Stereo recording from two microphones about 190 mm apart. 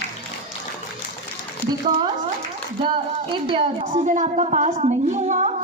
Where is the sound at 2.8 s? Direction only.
25° right (ahead or behind).